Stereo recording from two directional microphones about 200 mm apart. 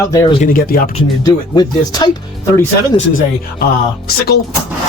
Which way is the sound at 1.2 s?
20° left (ahead or behind).